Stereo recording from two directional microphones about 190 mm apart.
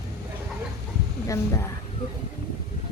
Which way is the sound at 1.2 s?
15° left (ahead or behind).